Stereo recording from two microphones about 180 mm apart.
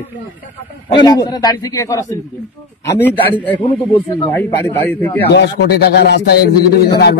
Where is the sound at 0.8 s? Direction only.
25° left (ahead or behind).